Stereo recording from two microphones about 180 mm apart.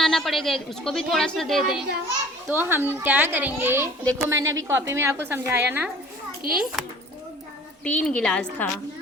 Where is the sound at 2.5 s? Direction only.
10° right (ahead or behind).